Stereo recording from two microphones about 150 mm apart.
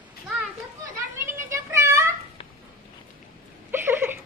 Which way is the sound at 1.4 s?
20° right (ahead or behind).